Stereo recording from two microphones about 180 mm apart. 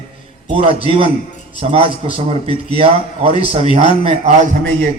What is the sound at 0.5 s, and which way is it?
A man's voice, 30° right (ahead or behind).